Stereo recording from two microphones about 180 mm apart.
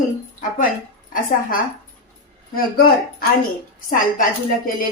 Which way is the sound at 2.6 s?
55° left (ahead or behind).